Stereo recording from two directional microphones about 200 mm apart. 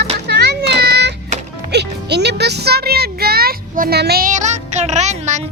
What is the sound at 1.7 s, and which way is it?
Music, 55° right (ahead or behind).